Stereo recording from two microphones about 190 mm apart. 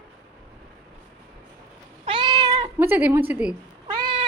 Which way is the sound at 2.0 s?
25° right (ahead or behind).